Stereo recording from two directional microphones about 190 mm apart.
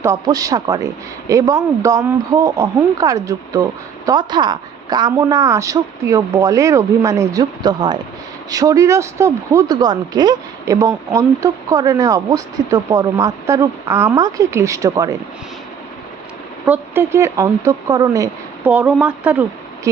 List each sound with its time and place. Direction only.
0.0 s a woman's voice: 15° right (ahead or behind)
16.6 s speech: 10° right (ahead or behind)